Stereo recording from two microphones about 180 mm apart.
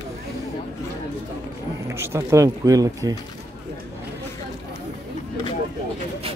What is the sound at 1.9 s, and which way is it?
Speech, 15° right (ahead or behind).